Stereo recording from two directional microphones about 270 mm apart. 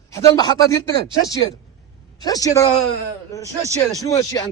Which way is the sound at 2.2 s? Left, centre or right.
Centre.